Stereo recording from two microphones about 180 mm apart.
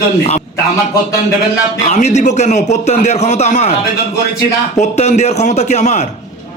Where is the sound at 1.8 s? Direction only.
40° left (ahead or behind).